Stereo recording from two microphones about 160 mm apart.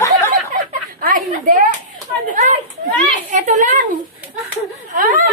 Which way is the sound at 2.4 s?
50° right (ahead or behind).